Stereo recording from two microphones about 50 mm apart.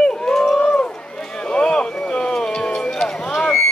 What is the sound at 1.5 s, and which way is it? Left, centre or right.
Boat, centre.